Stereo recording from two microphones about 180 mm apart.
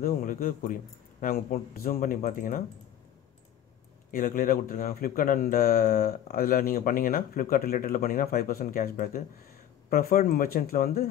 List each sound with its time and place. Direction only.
0.0 s speech: 50° left (ahead or behind)
4.1 s speech: 50° left (ahead or behind)